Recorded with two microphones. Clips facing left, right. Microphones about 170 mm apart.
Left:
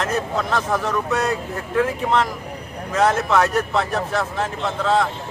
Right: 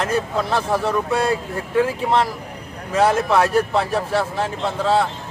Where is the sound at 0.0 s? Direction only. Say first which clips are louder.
Right 1 dB; 30° right (ahead or behind).